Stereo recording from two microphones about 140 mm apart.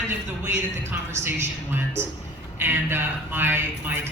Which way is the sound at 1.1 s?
15° right (ahead or behind).